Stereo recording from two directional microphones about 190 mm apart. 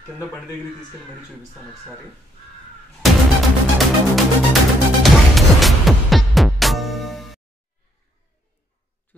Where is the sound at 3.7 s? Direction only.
Centre (ahead or behind).